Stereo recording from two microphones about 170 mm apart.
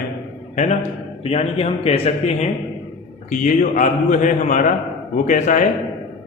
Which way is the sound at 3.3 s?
50° left (ahead or behind).